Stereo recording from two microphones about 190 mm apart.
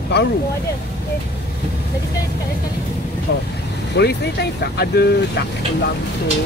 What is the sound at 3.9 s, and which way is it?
Speech, 60° left (ahead or behind).